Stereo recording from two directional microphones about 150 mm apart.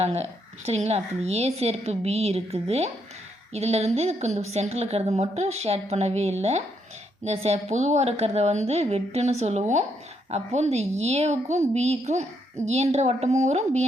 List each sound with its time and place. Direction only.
0.0 s a woman's voice: 45° right (ahead or behind)